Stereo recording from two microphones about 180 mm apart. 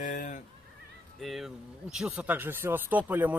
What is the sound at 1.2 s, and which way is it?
Speech, centre (ahead or behind).